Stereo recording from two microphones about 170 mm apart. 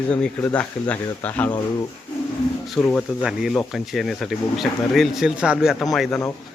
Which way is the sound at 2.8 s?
5° left (ahead or behind).